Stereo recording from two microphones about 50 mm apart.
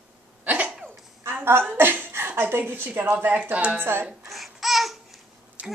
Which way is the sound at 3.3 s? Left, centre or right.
Right.